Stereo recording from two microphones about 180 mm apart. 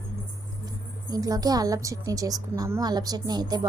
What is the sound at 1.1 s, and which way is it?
A woman's voice, 20° right (ahead or behind).